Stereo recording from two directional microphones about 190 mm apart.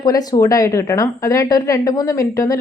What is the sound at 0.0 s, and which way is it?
Speech, 20° left (ahead or behind).